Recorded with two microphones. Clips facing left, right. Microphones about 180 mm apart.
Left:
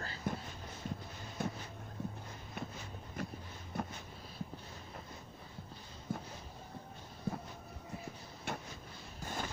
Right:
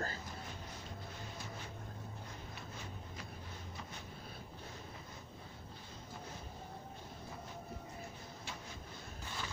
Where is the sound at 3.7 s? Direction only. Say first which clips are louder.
Left 14 dB; 55° left (ahead or behind).